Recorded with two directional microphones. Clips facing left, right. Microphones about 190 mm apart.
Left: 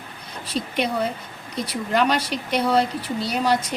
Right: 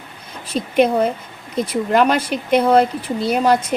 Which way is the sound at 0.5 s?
55° right (ahead or behind).